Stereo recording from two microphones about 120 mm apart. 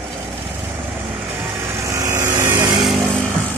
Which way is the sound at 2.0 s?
25° right (ahead or behind).